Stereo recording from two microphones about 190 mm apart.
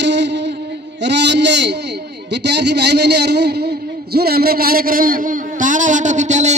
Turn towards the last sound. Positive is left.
turn(degrees=-40)  # may be behind; listen again after turning